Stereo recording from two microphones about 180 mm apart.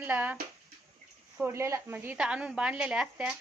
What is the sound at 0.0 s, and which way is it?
Speech, 10° right (ahead or behind).